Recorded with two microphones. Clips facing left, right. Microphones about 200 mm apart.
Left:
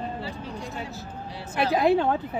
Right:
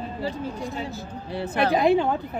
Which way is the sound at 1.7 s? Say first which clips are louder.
Even; centre (ahead or behind).